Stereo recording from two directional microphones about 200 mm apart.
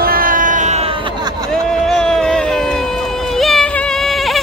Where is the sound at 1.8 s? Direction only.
Centre (ahead or behind).